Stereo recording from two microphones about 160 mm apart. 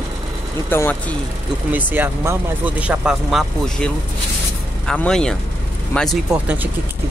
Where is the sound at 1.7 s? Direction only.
10° right (ahead or behind).